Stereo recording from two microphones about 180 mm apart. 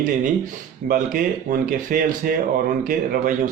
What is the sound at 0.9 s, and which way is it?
Speech, 50° right (ahead or behind).